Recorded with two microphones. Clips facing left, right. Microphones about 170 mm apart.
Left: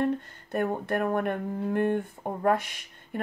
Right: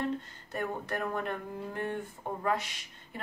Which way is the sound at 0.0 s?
55° left (ahead or behind).